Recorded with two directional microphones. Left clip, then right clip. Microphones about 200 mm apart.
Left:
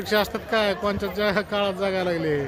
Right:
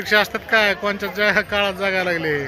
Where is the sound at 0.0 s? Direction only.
5° left (ahead or behind).